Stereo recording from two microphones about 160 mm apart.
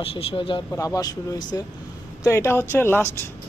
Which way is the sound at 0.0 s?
35° left (ahead or behind).